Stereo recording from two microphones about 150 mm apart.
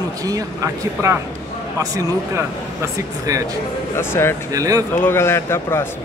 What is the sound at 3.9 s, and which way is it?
Speech, 15° left (ahead or behind).